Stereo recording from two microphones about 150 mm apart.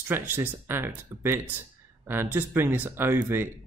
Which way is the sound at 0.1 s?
15° right (ahead or behind).